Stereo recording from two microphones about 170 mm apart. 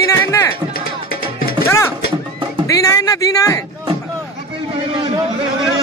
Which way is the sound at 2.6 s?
20° left (ahead or behind).